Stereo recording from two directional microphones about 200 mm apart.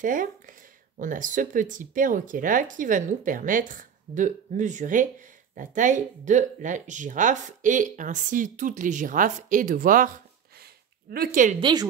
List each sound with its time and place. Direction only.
0.0 s speech: 40° right (ahead or behind)
11.6 s a woman's voice: 20° right (ahead or behind)